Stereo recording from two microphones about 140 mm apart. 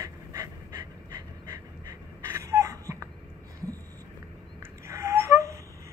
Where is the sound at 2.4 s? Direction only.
20° right (ahead or behind).